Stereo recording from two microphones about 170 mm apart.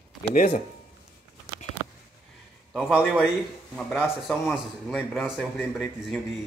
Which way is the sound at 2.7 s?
5° right (ahead or behind).